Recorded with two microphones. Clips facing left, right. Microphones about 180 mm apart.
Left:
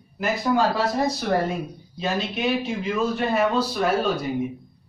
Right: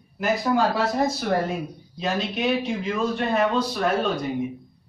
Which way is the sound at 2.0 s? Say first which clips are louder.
Even; centre (ahead or behind).